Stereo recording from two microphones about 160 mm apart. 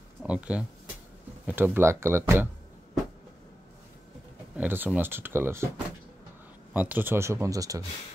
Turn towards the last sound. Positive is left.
turn(degrees=-20)  # may be behind; listen again after turning